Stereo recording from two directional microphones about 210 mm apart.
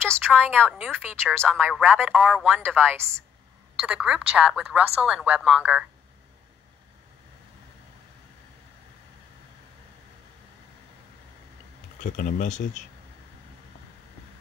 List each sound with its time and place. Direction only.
0.3 s a woman's voice: 5° right (ahead or behind)
12.0 s speech: 40° left (ahead or behind)